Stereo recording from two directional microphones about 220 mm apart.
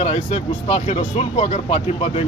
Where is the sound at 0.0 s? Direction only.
30° left (ahead or behind).